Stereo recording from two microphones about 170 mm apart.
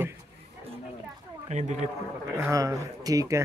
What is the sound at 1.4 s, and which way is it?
Speech, 45° right (ahead or behind).